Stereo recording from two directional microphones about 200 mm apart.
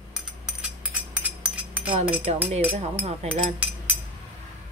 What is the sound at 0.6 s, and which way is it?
Chink, 10° right (ahead or behind).